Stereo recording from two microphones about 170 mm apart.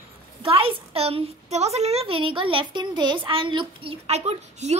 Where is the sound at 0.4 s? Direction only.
35° right (ahead or behind).